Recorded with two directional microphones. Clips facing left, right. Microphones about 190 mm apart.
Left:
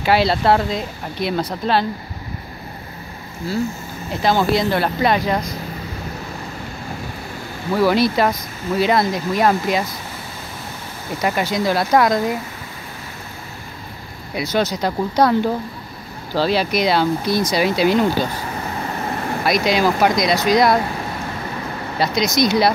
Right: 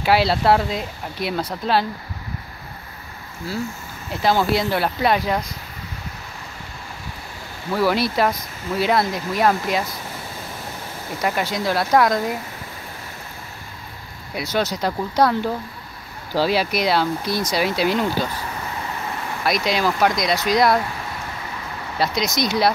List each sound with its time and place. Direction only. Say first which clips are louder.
0.0 s speech: left 1 dB; 5° right (ahead or behind)
4.1 s speech: left 2 dB; 5° right (ahead or behind)
7.7 s speech: left 4 dB; 5° right (ahead or behind)
11.2 s speech: left 3 dB; centre (ahead or behind)
14.3 s speech: left 3 dB; centre (ahead or behind)
18.9 s vehicle: left 5 dB; 45° left (ahead or behind)
19.6 s speech: left 3 dB; 5° left (ahead or behind)
21.9 s speech: left 3 dB; centre (ahead or behind)